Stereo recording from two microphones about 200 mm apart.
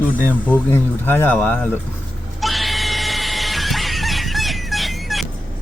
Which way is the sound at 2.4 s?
Centre (ahead or behind).